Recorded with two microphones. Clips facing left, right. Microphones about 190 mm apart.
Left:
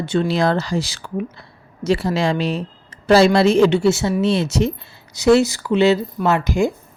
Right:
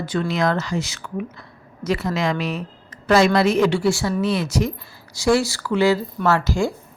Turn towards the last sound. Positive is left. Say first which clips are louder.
# left 2 dB
turn(degrees=20)  # may be behind; listen again after turning